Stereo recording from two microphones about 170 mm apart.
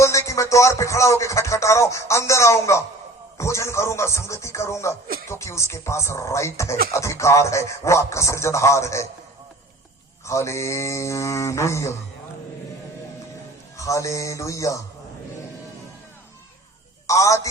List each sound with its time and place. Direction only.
0.0 s speech: 15° left (ahead or behind)
10.2 s speech: 15° left (ahead or behind)
13.7 s music: 20° left (ahead or behind)
17.1 s music: 20° left (ahead or behind)